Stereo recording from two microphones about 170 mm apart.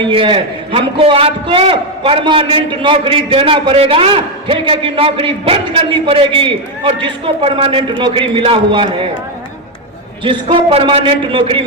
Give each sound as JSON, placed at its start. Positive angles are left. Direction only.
{"t": 0.0, "sound": "a man's voice", "side_deg": -30}
{"t": 10.2, "sound": "a man's voice", "side_deg": -30}